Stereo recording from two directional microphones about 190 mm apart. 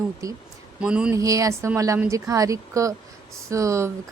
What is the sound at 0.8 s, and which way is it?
Speech, 5° right (ahead or behind).